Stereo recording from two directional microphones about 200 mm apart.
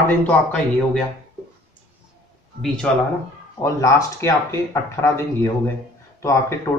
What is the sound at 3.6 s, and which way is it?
Speech, 15° left (ahead or behind).